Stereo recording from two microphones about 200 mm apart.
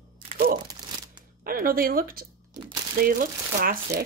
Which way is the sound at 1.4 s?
45° right (ahead or behind).